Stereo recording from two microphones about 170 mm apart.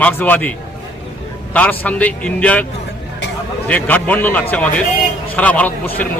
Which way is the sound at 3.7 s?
10° left (ahead or behind).